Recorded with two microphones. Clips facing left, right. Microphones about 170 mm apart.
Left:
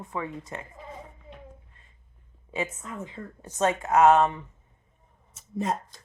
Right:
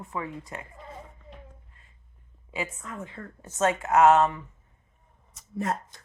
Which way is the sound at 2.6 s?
20° left (ahead or behind).